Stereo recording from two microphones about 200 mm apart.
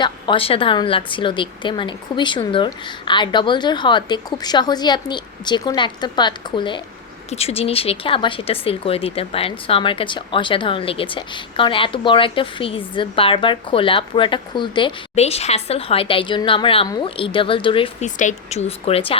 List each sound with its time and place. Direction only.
0.0 s a woman's voice: 25° left (ahead or behind)